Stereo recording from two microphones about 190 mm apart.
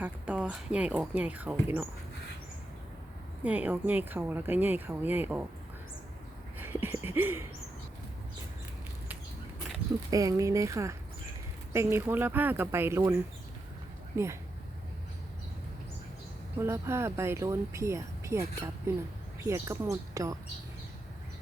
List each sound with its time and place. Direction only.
0.0 s speech: 5° right (ahead or behind)
3.4 s speech: 10° right (ahead or behind)
6.6 s a sound: 10° right (ahead or behind)
10.1 s speech: 20° right (ahead or behind)
14.1 s speech: 15° right (ahead or behind)
16.6 s speech: 15° right (ahead or behind)